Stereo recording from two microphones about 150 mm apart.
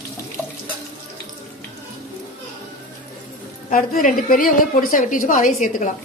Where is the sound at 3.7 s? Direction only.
60° left (ahead or behind).